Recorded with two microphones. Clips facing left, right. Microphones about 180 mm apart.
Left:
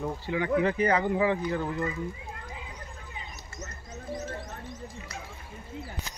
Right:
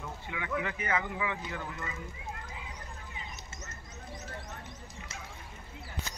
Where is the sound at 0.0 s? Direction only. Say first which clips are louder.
Left 10 dB; 35° left (ahead or behind).